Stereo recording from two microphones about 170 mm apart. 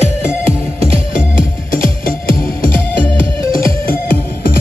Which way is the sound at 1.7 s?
50° left (ahead or behind).